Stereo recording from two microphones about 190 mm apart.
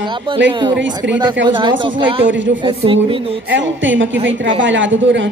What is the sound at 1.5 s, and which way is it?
Speech, 25° right (ahead or behind).